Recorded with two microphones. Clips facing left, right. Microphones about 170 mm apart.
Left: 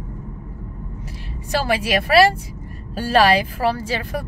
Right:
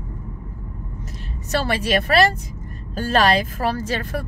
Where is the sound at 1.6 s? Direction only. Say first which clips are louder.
Left 1 dB; 10° left (ahead or behind).